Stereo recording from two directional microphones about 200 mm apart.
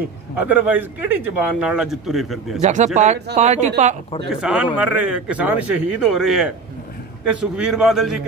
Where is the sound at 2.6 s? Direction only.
35° right (ahead or behind).